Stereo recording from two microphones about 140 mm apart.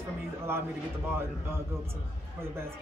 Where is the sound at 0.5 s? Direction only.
15° right (ahead or behind).